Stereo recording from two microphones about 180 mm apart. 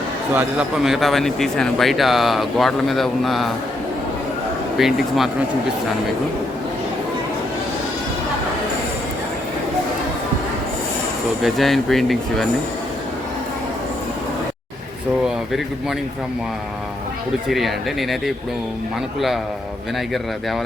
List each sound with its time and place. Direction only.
0.3 s speech: centre (ahead or behind)
4.8 s speech: centre (ahead or behind)
11.4 s speech: centre (ahead or behind)